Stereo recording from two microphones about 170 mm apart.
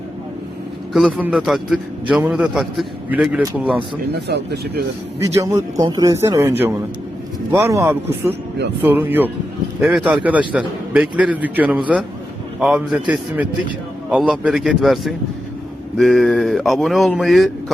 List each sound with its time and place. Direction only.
0.9 s a man's voice: centre (ahead or behind)
4.1 s speech: 75° right (ahead or behind)
5.2 s a man's voice: 15° right (ahead or behind); by 17.5 s centre (ahead or behind)